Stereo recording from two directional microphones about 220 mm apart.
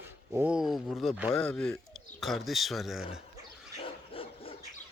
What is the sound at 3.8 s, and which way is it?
Dog, 25° left (ahead or behind).